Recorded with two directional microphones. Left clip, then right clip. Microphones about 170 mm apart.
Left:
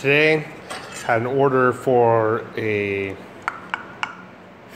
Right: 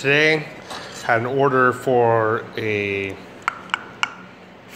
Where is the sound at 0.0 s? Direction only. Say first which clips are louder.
Even; 15° left (ahead or behind).